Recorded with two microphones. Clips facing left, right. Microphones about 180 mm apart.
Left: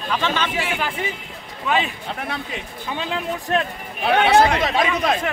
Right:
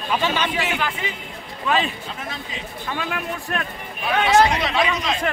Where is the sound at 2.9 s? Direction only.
20° left (ahead or behind).